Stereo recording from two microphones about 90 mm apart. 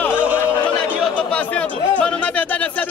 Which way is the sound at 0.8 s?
15° left (ahead or behind).